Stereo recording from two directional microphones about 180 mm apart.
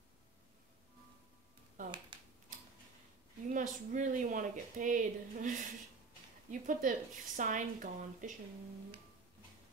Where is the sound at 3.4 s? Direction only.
45° right (ahead or behind).